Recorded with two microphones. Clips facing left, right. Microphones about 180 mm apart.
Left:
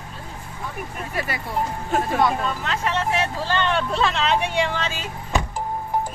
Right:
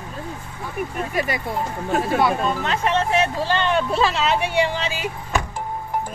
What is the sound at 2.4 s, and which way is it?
Speech, 20° right (ahead or behind).